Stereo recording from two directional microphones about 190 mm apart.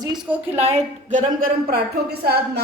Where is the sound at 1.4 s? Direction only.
55° right (ahead or behind).